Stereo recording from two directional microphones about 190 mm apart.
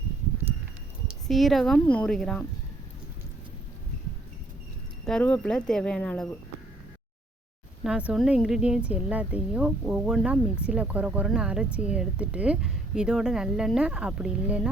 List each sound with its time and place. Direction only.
1.0 s speech: centre (ahead or behind)
5.0 s speech: 5° left (ahead or behind)
7.9 s speech: 5° right (ahead or behind)